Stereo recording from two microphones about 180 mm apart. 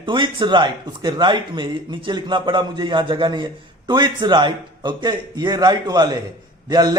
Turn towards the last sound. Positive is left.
turn(degrees=-20)  # may be behind; listen again after turning